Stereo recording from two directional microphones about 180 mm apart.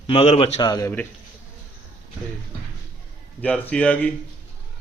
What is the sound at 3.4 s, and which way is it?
Speech, 5° left (ahead or behind).